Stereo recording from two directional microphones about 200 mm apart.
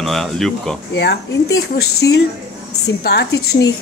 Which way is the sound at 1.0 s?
55° left (ahead or behind).